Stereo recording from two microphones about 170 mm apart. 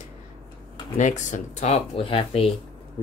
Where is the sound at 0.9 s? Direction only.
45° left (ahead or behind).